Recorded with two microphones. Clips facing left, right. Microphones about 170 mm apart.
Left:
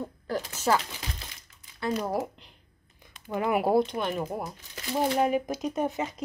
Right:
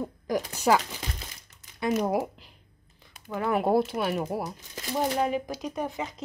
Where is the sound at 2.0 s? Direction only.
10° right (ahead or behind).